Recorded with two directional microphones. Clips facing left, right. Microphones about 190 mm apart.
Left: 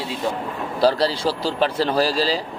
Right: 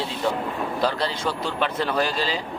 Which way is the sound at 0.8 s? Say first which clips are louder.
Left 8 dB; 35° left (ahead or behind).